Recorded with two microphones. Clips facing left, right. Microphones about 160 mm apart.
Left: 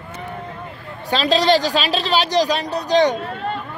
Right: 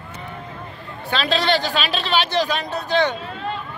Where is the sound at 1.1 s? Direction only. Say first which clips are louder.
Left 4 dB; 40° left (ahead or behind).